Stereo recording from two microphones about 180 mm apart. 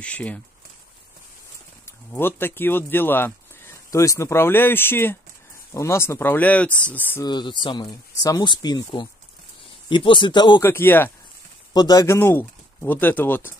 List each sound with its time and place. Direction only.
0.0 s speech: 5° left (ahead or behind)
1.9 s speech: 10° left (ahead or behind)
7.2 s speech: 25° left (ahead or behind)
10.6 s speech: 10° left (ahead or behind)
11.7 s speech: 20° left (ahead or behind)